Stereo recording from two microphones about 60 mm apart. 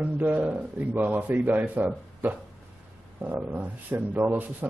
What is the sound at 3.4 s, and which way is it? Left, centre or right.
A man's voice, right.